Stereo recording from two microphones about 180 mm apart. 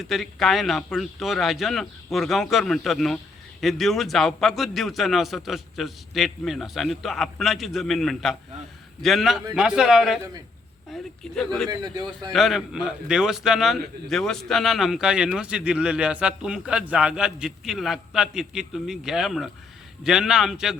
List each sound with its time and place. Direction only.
0.0 s a man's voice: centre (ahead or behind)
11.7 s speech: 20° right (ahead or behind)
12.3 s a man's voice: centre (ahead or behind)